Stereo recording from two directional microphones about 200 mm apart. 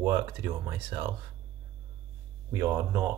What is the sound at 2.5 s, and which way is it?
Speech, 15° right (ahead or behind).